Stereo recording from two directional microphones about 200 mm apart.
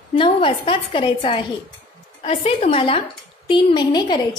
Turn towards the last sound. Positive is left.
turn(degrees=20)  # may be behind; listen again after turning